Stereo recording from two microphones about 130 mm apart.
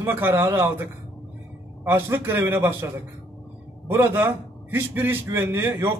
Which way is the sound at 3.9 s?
20° right (ahead or behind).